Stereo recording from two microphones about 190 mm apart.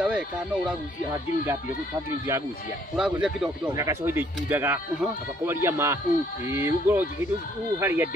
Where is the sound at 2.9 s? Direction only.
Centre (ahead or behind).